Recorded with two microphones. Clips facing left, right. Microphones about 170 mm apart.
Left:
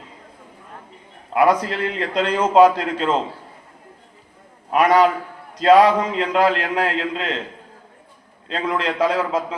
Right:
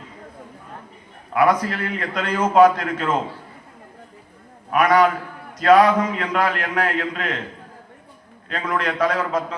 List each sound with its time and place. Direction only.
1.3 s a man's voice: 25° left (ahead or behind)
4.7 s a man's voice: 30° left (ahead or behind)
8.4 s a man's voice: 25° left (ahead or behind)